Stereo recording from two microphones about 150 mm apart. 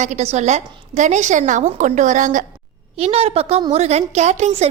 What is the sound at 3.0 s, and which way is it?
A woman's voice, 40° right (ahead or behind).